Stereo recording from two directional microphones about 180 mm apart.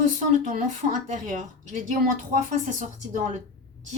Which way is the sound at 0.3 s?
45° right (ahead or behind).